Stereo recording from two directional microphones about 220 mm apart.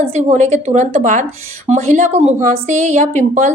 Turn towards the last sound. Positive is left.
turn(degrees=-35)  # may be behind; listen again after turning